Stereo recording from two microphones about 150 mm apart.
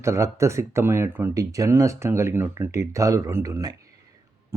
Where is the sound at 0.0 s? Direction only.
20° right (ahead or behind).